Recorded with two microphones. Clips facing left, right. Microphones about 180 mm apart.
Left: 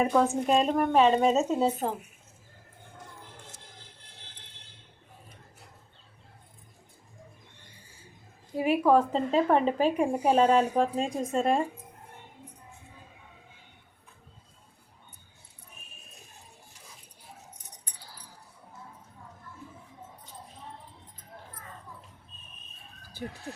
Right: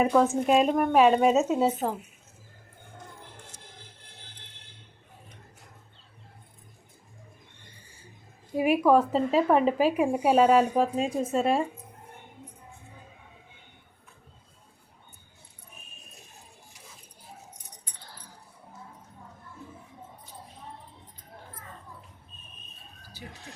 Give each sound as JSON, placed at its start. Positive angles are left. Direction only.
{"t": 0.0, "sound": "speech", "side_deg": 0}
{"t": 8.5, "sound": "speech", "side_deg": -10}
{"t": 23.2, "sound": "chicken", "side_deg": 50}